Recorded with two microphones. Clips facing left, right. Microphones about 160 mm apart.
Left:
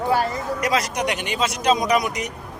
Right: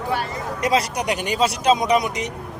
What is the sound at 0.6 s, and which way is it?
Speech, 30° right (ahead or behind).